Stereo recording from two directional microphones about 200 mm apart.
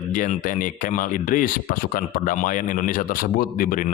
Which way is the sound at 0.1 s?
40° left (ahead or behind).